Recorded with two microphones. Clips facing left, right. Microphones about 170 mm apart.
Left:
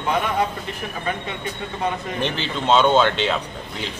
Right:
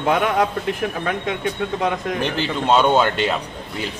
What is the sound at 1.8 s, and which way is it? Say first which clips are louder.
Speech: right 1 dB; 90° right.